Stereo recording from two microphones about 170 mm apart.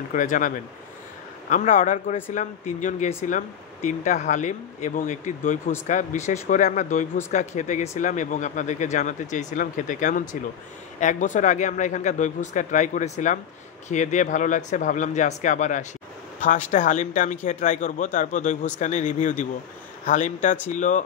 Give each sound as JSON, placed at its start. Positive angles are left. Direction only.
{"t": 0.1, "sound": "speech", "side_deg": 50}
{"t": 1.5, "sound": "speech", "side_deg": 50}
{"t": 16.3, "sound": "a sound", "side_deg": 50}
{"t": 16.7, "sound": "speech", "side_deg": 45}